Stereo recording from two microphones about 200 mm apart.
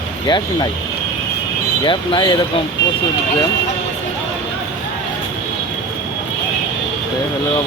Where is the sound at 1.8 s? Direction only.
25° left (ahead or behind).